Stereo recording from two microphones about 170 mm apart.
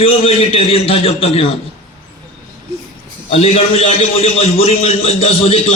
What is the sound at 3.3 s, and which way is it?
Speech, 35° left (ahead or behind).